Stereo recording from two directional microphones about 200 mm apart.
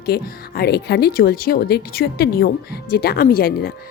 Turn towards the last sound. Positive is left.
turn(degrees=50)  # may be behind; listen again after turning